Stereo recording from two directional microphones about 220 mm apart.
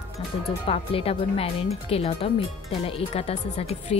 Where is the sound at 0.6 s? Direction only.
25° left (ahead or behind).